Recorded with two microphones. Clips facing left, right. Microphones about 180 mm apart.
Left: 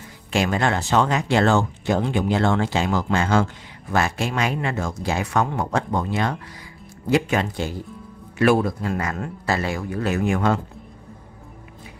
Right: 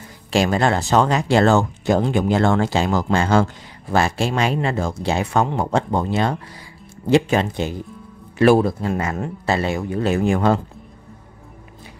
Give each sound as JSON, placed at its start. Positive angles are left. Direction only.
{"t": 0.3, "sound": "speech", "side_deg": -35}
{"t": 8.4, "sound": "speech", "side_deg": -30}